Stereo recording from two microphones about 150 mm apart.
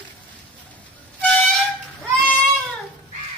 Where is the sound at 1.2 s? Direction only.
5° left (ahead or behind).